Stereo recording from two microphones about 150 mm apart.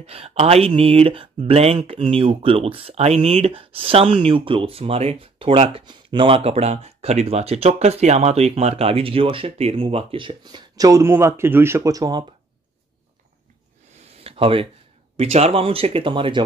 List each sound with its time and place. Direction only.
0.0 s speech: 40° right (ahead or behind); by 12.3 s 25° right (ahead or behind)
14.2 s a sound: 40° right (ahead or behind)
15.1 s speech: 45° right (ahead or behind)